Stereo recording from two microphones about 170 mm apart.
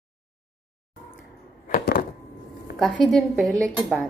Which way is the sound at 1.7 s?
55° left (ahead or behind).